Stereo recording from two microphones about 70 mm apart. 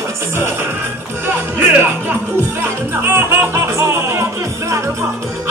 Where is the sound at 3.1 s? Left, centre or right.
Right.